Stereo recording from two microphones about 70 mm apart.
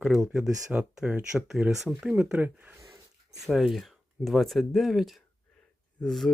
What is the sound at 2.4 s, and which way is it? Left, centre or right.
Speech, right.